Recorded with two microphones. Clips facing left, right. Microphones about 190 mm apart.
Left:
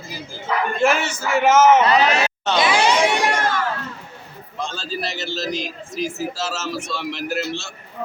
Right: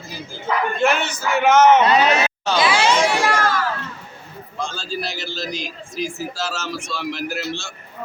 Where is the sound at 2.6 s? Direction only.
15° left (ahead or behind).